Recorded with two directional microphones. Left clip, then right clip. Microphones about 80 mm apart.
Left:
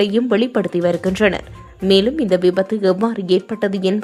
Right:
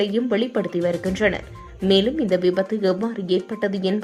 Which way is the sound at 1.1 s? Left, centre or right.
Left.